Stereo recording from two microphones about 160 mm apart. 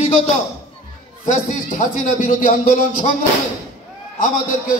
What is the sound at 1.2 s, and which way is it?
A man's voice, 55° left (ahead or behind).